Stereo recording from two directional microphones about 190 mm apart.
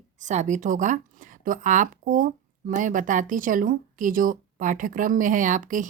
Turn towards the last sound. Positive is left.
turn(degrees=-45)  # may be behind; listen again after turning